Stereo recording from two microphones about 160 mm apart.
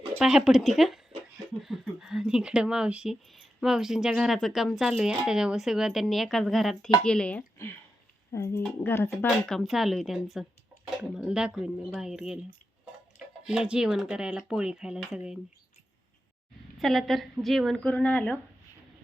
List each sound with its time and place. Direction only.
0.2 s speech: 5° right (ahead or behind); by 9.0 s 15° left (ahead or behind)
9.0 s speech: centre (ahead or behind)
13.4 s speech: 5° right (ahead or behind)
16.7 s speech: centre (ahead or behind)